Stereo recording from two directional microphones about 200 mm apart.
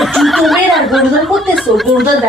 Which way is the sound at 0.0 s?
Centre (ahead or behind).